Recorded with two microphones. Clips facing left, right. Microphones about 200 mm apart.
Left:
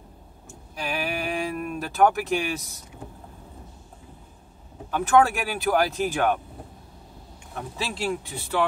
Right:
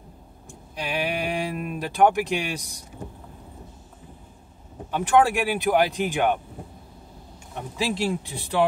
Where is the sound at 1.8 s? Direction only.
15° right (ahead or behind).